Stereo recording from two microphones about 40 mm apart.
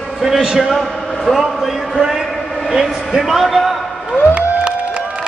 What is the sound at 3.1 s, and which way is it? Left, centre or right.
Speech, centre.